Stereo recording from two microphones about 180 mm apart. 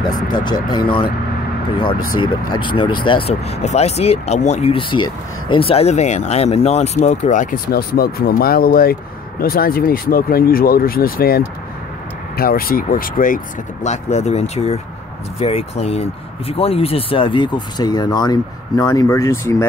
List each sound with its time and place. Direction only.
0.1 s speech: 25° left (ahead or behind)
2.1 s speech: 25° left (ahead or behind); by 13.4 s 50° left (ahead or behind)
13.8 s speech: 40° left (ahead or behind); by 19.6 s 15° left (ahead or behind)